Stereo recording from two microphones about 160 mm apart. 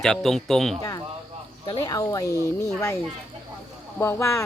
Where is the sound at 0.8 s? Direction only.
20° left (ahead or behind).